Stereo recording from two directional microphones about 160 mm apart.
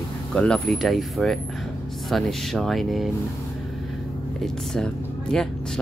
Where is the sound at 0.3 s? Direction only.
5° left (ahead or behind).